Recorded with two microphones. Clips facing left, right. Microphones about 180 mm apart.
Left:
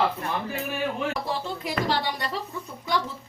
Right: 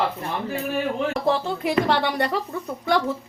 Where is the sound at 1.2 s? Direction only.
65° right (ahead or behind).